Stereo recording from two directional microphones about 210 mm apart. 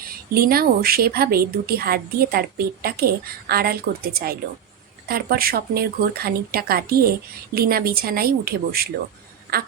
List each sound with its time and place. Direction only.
0.0 s speech: 45° right (ahead or behind)